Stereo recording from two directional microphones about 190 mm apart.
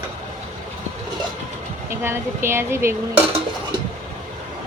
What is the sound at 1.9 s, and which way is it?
Speech, 15° right (ahead or behind).